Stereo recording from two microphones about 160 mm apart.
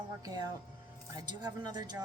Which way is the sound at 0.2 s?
25° right (ahead or behind).